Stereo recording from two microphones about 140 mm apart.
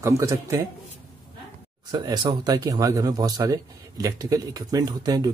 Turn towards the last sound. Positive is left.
turn(degrees=-30)  # may be behind; listen again after turning